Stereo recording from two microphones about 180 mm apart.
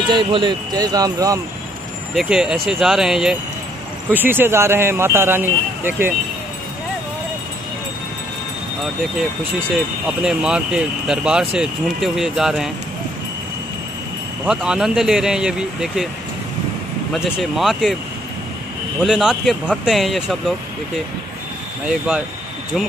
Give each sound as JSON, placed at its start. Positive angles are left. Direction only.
{"t": 0.1, "sound": "speech", "side_deg": -25}
{"t": 2.1, "sound": "speech", "side_deg": -5}
{"t": 9.5, "sound": "speech", "side_deg": 0}
{"t": 14.4, "sound": "speech", "side_deg": -5}
{"t": 17.4, "sound": "speech", "side_deg": 0}
{"t": 19.0, "sound": "speech", "side_deg": -5}